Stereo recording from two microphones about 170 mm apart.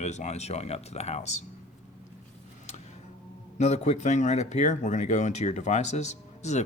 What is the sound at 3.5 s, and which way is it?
Speech, 40° left (ahead or behind).